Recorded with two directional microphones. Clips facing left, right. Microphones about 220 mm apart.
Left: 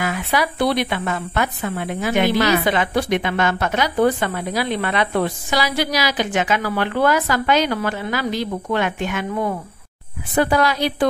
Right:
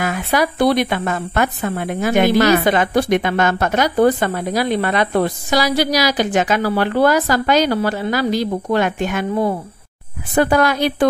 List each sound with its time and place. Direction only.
0.0 s a woman's voice: 45° right (ahead or behind)